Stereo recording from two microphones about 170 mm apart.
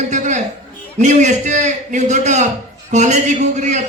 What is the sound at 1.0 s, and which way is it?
A man's voice, 45° right (ahead or behind).